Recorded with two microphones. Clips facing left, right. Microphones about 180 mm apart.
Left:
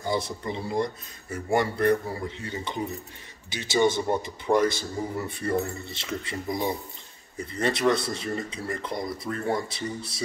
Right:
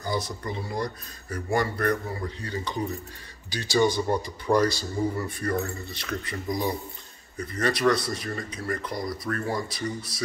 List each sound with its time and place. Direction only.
0.0 s speech: 25° left (ahead or behind)